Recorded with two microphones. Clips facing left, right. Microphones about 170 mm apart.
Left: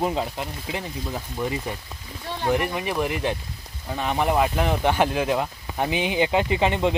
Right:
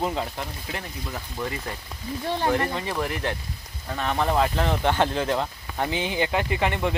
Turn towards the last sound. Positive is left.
turn(degrees=20)  # may be behind; listen again after turning